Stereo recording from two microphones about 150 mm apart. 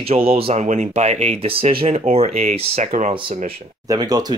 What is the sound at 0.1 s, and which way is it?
Speech, 40° right (ahead or behind).